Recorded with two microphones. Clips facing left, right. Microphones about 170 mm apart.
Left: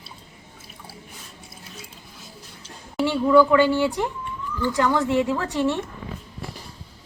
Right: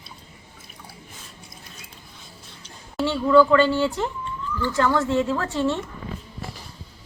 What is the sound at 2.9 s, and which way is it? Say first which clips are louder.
Speech: even; 15° left (ahead or behind).